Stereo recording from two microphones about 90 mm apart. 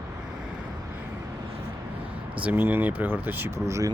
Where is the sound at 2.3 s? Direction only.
15° right (ahead or behind).